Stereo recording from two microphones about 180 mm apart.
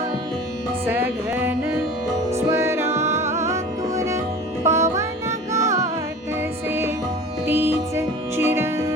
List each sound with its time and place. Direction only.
0.9 s music: 10° right (ahead or behind)